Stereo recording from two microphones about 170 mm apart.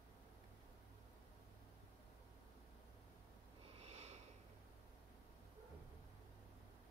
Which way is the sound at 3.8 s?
40° right (ahead or behind).